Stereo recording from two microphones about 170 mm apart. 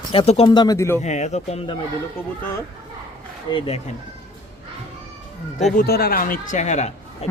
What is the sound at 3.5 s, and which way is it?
Speech, 35° left (ahead or behind).